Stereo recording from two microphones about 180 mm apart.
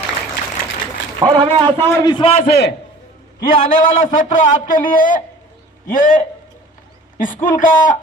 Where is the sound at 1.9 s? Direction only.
20° left (ahead or behind).